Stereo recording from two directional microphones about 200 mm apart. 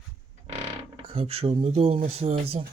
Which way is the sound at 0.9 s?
25° right (ahead or behind).